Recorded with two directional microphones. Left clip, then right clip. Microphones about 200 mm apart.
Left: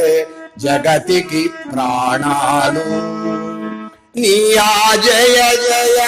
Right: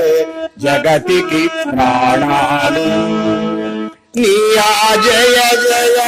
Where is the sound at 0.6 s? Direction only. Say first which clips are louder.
Right 1 dB; 25° right (ahead or behind).